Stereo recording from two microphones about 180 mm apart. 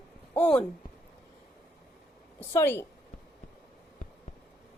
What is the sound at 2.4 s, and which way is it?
Speech, 15° left (ahead or behind).